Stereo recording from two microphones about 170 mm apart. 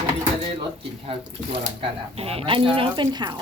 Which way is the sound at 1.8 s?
35° right (ahead or behind).